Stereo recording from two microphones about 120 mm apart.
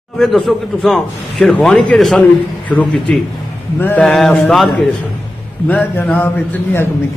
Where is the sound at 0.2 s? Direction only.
Centre (ahead or behind).